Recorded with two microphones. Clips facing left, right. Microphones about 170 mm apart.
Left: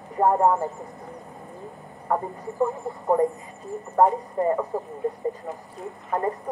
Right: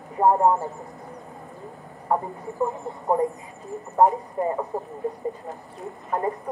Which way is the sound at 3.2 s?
Centre (ahead or behind).